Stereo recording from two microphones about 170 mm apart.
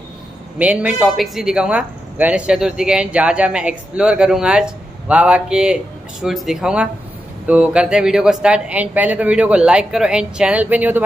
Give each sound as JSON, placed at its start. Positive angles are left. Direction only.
{"t": 0.6, "sound": "a man's voice", "side_deg": -5}